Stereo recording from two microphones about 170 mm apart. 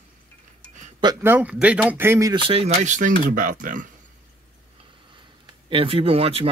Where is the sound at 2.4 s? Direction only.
35° right (ahead or behind).